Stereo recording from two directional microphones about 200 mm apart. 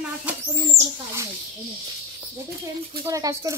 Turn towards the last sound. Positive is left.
turn(degrees=-15)  # may be behind; listen again after turning